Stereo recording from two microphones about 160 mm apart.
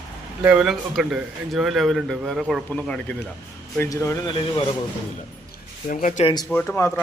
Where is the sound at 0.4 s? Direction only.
5° right (ahead or behind).